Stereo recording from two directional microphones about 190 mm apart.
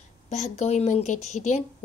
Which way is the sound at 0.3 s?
35° left (ahead or behind).